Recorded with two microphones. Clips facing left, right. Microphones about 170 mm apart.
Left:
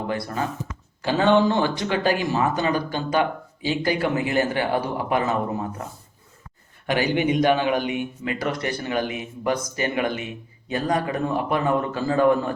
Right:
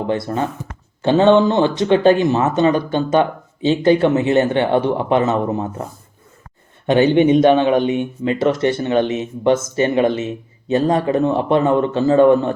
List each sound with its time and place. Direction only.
0.1 s speech: 25° right (ahead or behind)
6.8 s speech: 25° right (ahead or behind)